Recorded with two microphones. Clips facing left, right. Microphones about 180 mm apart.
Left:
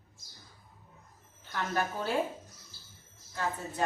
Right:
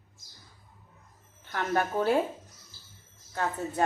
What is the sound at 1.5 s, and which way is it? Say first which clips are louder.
Speech: right 4 dB; 60° right (ahead or behind).